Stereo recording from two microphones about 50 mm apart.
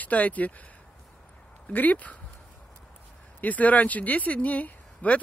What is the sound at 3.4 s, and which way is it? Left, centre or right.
Speech, left.